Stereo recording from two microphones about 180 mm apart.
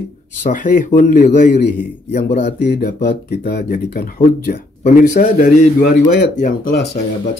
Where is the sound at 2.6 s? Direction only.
65° left (ahead or behind).